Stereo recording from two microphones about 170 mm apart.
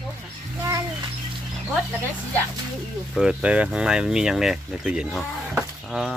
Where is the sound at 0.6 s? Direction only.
15° right (ahead or behind).